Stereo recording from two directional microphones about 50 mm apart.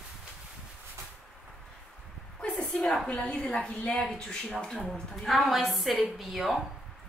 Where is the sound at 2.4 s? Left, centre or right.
Left.